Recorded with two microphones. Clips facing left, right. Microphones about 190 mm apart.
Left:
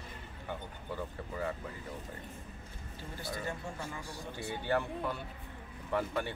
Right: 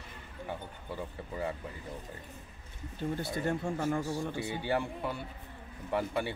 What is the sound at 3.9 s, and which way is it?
Speech, 45° right (ahead or behind).